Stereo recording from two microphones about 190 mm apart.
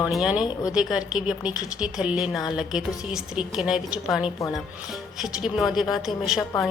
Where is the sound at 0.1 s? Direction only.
5° right (ahead or behind).